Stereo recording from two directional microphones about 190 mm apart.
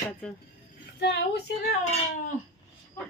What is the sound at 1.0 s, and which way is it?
Speech, 60° left (ahead or behind).